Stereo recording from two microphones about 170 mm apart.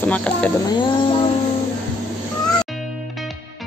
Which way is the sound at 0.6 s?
25° left (ahead or behind).